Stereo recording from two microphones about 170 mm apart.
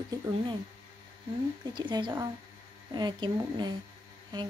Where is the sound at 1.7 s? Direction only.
25° right (ahead or behind).